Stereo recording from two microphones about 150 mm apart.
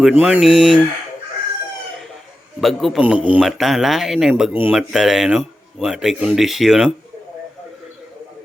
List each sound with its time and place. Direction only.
0.0 s speech: 5° right (ahead or behind)
2.6 s speech: centre (ahead or behind)